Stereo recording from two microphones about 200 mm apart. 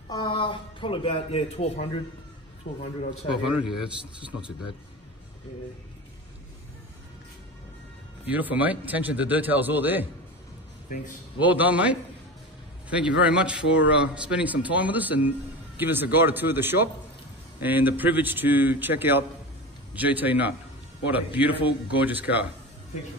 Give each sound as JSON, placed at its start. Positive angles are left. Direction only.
{"t": 0.1, "sound": "speech", "side_deg": 25}
{"t": 2.6, "sound": "a man's voice", "side_deg": 40}
{"t": 3.4, "sound": "a man's voice", "side_deg": 0}
{"t": 8.3, "sound": "a man's voice", "side_deg": -10}
{"t": 11.4, "sound": "a man's voice", "side_deg": -10}
{"t": 13.2, "sound": "a man's voice", "side_deg": -5}